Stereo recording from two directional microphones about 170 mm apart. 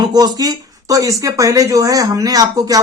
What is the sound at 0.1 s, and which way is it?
A man's voice, 25° right (ahead or behind).